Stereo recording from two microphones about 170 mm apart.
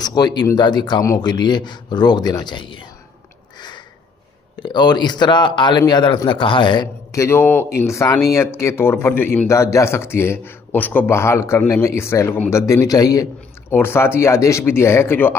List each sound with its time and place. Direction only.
0.0 s speech: 25° left (ahead or behind)
4.6 s a man's voice: 25° left (ahead or behind)